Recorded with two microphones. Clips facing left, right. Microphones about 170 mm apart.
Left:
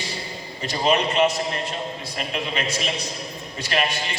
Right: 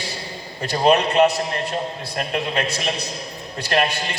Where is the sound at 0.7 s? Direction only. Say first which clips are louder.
Right 4 dB; 60° right (ahead or behind).